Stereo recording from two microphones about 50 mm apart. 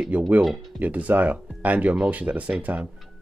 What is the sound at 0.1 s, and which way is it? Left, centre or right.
Speech, right.